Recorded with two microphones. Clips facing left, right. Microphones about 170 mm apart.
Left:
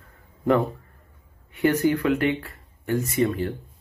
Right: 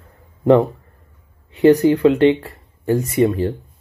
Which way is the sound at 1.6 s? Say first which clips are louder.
Right 9 dB; 30° right (ahead or behind).